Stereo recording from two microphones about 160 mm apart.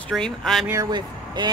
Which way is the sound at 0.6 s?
20° right (ahead or behind).